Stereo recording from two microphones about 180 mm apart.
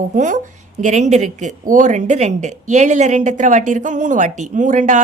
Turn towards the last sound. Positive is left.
turn(degrees=-45)  # may be behind; listen again after turning